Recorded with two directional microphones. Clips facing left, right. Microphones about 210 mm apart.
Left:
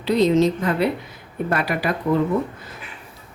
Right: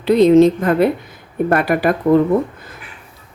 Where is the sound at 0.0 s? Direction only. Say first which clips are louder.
Right 7 dB; 55° right (ahead or behind).